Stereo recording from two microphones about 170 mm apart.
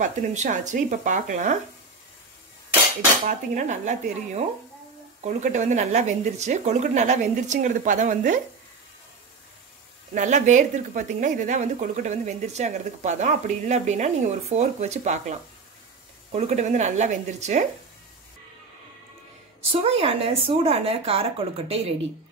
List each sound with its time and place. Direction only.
0.0 s speech: 45° right (ahead or behind)
3.3 s speech: 45° right (ahead or behind)
10.1 s speech: 45° right (ahead or behind)
19.7 s speech: 35° right (ahead or behind)